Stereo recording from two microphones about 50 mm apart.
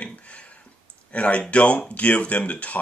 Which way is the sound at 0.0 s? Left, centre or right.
Left.